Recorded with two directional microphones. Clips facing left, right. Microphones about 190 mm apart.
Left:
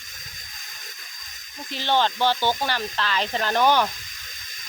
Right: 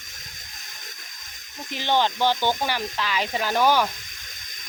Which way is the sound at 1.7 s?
15° right (ahead or behind).